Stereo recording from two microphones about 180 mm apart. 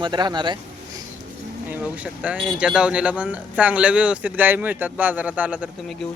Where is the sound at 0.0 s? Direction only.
25° right (ahead or behind).